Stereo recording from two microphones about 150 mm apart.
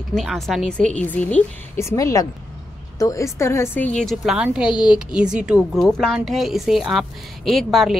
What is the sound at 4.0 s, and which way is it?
A woman's voice, centre (ahead or behind).